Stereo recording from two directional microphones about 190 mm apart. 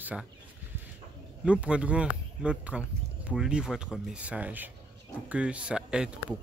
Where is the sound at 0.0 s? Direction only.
5° right (ahead or behind).